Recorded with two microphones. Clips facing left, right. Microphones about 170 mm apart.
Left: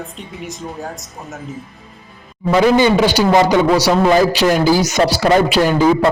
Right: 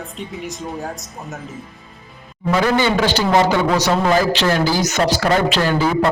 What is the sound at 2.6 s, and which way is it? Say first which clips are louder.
A man's voice: left 5 dB; 15° left (ahead or behind).